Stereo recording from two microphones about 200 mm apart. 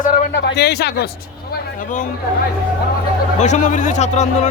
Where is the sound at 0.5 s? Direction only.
55° left (ahead or behind).